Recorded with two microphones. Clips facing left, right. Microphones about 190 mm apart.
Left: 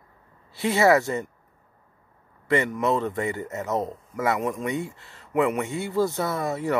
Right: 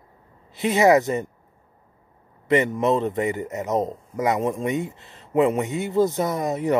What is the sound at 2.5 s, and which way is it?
A man's voice, 20° right (ahead or behind).